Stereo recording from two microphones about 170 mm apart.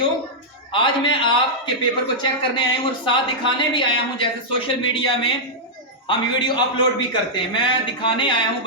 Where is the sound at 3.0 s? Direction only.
30° left (ahead or behind).